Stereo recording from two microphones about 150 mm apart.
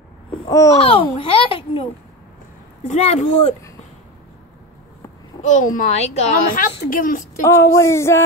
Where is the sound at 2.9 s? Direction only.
50° left (ahead or behind).